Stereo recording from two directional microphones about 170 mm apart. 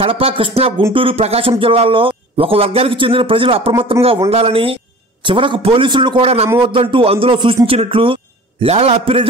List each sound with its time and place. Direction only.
0.0 s a man's voice: 30° right (ahead or behind)